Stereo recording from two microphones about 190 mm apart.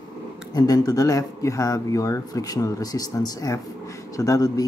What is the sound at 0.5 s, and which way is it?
Speech, 20° left (ahead or behind).